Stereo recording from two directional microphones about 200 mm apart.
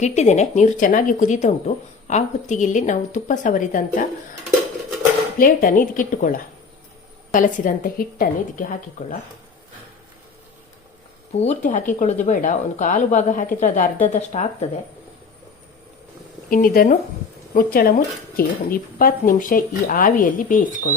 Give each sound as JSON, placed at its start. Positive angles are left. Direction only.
{"t": 0.0, "sound": "speech", "side_deg": 35}
{"t": 5.4, "sound": "speech", "side_deg": 45}
{"t": 11.3, "sound": "speech", "side_deg": 35}
{"t": 16.5, "sound": "speech", "side_deg": 45}